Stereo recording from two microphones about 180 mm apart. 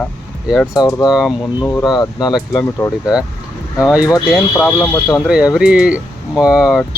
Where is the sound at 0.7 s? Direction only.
20° left (ahead or behind).